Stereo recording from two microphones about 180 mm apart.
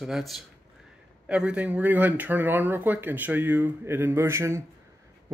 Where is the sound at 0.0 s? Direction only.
Centre (ahead or behind).